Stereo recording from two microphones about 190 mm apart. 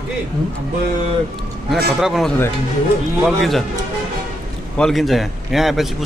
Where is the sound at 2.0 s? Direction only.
Centre (ahead or behind).